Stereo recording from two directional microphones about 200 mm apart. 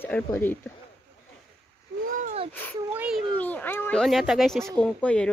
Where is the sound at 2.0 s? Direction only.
40° right (ahead or behind).